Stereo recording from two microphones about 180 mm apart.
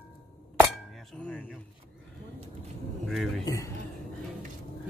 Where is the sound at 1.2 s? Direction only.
5° left (ahead or behind).